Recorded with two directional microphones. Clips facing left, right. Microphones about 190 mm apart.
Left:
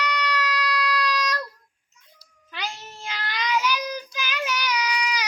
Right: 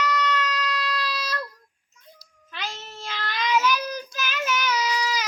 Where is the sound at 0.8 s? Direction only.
30° right (ahead or behind).